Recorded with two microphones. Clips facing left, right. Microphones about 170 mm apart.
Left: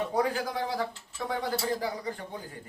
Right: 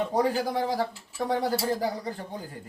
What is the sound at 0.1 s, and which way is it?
Speech, 35° right (ahead or behind).